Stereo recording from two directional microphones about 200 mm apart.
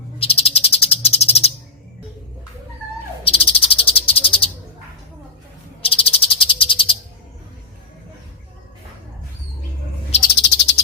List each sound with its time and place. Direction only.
0.2 s frog: 30° left (ahead or behind)
3.2 s frog: 30° left (ahead or behind)
5.8 s frog: 30° left (ahead or behind)
10.3 s cricket: 60° left (ahead or behind)